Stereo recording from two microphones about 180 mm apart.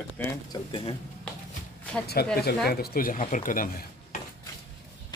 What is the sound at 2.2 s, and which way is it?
Speech, 60° left (ahead or behind).